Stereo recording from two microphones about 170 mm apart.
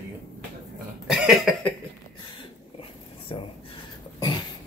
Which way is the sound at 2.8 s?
30° left (ahead or behind).